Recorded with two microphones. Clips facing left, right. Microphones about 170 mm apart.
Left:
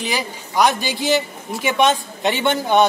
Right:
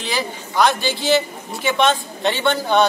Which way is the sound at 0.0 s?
15° left (ahead or behind).